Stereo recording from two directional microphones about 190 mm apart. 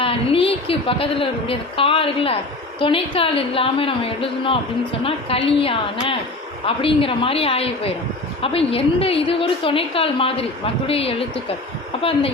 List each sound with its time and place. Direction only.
0.0 s a woman's voice: 30° left (ahead or behind)